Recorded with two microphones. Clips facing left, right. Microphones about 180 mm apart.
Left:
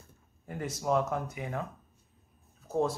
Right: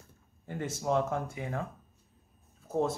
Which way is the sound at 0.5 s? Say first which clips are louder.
Left 1 dB; 25° right (ahead or behind).